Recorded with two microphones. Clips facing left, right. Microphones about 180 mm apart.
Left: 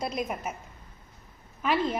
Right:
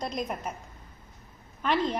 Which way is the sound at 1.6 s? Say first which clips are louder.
Even; 5° left (ahead or behind).